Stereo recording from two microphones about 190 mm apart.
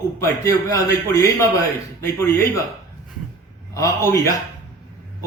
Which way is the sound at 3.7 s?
15° left (ahead or behind).